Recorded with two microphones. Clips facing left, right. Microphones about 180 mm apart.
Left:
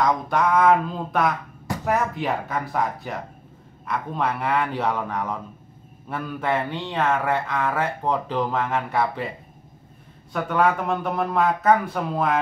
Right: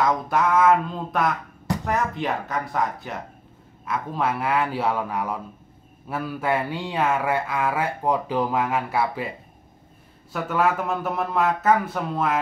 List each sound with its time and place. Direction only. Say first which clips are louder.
0.0 s speech: even; centre (ahead or behind)
10.3 s speech: left 1 dB; 5° right (ahead or behind)